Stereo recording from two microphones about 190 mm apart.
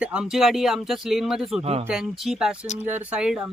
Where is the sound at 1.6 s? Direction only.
30° right (ahead or behind).